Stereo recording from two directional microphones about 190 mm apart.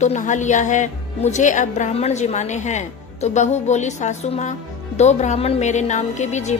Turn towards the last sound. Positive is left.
turn(degrees=35)  # may be behind; listen again after turning